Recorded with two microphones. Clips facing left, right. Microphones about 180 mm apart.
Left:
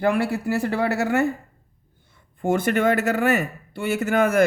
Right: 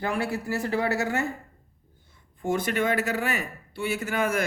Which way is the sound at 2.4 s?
55° left (ahead or behind).